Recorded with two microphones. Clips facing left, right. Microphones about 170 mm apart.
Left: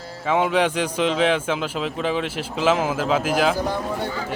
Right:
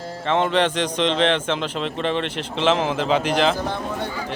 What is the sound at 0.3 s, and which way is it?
Speech, 5° left (ahead or behind).